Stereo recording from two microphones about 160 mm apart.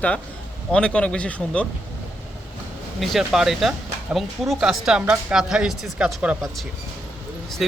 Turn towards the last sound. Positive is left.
turn(degrees=0)  # may be behind; listen again after turning